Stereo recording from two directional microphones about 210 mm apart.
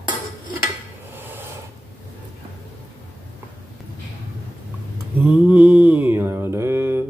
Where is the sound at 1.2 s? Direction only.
10° right (ahead or behind).